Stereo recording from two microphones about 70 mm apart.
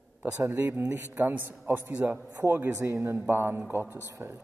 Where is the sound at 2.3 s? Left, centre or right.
Right.